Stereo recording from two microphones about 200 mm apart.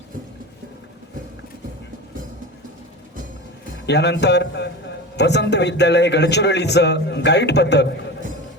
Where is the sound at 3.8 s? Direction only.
60° left (ahead or behind).